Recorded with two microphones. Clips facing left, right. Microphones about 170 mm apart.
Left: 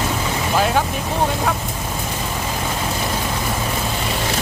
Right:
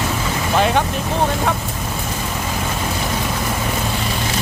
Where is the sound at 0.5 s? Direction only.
Centre (ahead or behind).